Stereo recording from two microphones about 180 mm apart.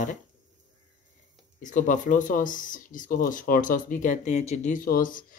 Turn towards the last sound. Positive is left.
turn(degrees=50)  # may be behind; listen again after turning